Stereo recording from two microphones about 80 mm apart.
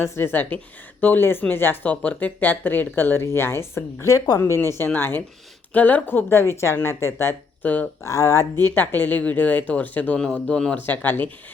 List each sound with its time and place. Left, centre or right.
0.0 s speech: left
4.0 s speech: left
7.6 s speech: left
8.0 s speech: left
8.6 s speech: left